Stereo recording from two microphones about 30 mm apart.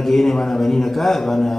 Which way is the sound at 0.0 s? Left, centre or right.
Centre.